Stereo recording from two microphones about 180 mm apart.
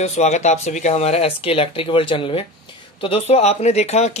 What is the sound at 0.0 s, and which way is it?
Speech, 40° left (ahead or behind).